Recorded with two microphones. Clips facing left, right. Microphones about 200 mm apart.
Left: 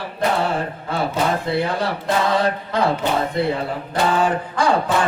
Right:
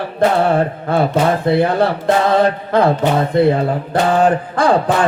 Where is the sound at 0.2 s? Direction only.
60° right (ahead or behind).